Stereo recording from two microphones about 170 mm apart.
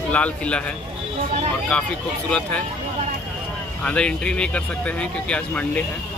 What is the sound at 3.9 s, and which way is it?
Speech, 5° left (ahead or behind).